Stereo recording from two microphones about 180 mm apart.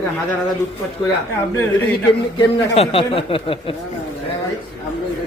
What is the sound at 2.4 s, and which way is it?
Speech, 35° left (ahead or behind).